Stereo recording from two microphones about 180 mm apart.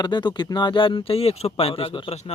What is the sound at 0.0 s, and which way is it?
Speech, 25° left (ahead or behind).